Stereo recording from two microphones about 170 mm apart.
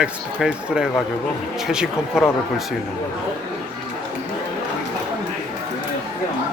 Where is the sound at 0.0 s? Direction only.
5° right (ahead or behind).